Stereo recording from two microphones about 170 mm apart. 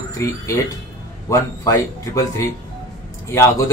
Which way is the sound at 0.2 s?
15° left (ahead or behind).